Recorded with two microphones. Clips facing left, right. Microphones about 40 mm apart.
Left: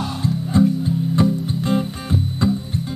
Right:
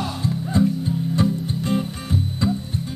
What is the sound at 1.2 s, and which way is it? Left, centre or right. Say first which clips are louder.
Music: left 3 dB; left.